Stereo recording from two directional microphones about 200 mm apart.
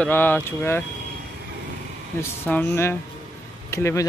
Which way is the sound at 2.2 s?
10° left (ahead or behind).